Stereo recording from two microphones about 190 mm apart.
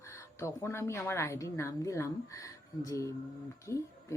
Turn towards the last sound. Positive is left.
turn(degrees=15)  # may be behind; listen again after turning